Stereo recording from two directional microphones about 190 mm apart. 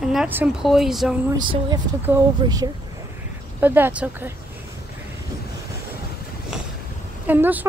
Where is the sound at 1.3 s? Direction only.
20° right (ahead or behind).